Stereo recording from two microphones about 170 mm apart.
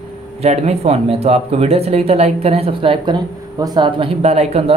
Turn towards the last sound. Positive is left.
turn(degrees=-40)  # may be behind; listen again after turning